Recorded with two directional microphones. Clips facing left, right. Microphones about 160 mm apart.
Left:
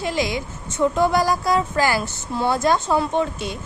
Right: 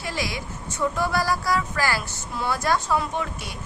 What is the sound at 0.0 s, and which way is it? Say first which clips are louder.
Speech: left 7 dB; 20° left (ahead or behind).